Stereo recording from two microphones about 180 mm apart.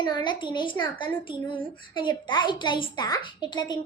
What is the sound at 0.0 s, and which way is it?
A woman's voice, 25° left (ahead or behind).